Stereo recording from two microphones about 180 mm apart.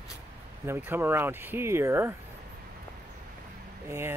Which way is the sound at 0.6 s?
10° right (ahead or behind).